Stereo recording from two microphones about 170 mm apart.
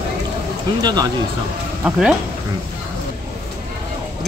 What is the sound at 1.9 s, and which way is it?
Speech, 5° right (ahead or behind).